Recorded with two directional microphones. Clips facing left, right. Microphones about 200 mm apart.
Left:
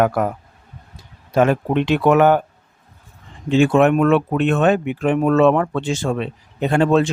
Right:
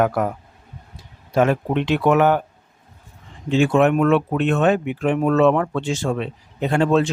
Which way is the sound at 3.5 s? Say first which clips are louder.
Left 2 dB; 60° left (ahead or behind).